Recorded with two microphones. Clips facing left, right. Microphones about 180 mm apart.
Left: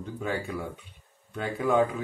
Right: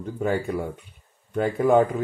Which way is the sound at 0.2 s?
45° right (ahead or behind).